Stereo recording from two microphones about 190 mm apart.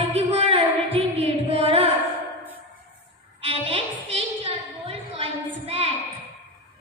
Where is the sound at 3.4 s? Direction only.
30° right (ahead or behind).